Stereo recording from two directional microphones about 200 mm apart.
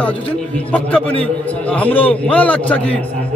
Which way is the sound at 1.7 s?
10° left (ahead or behind).